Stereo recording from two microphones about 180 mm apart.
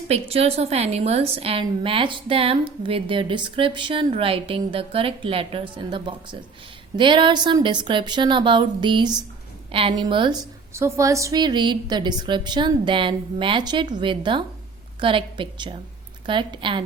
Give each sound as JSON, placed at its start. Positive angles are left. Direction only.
{"t": 0.1, "sound": "a woman's voice", "side_deg": -35}
{"t": 10.8, "sound": "a woman's voice", "side_deg": -15}